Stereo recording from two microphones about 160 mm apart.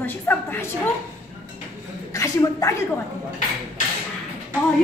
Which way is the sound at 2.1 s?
20° left (ahead or behind).